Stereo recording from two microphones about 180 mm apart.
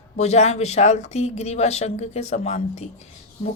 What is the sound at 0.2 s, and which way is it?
A woman's voice, 40° left (ahead or behind).